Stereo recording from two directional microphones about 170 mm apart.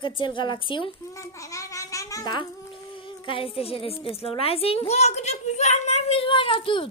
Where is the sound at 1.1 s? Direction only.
20° left (ahead or behind).